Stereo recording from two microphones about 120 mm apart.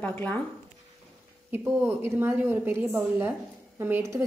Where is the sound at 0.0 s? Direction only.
15° left (ahead or behind).